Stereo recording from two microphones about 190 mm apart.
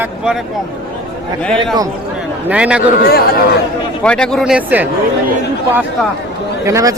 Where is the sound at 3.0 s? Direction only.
50° left (ahead or behind).